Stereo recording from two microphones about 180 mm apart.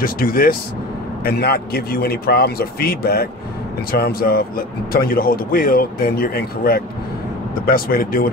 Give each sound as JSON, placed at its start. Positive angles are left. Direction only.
{"t": 0.0, "sound": "speech", "side_deg": 55}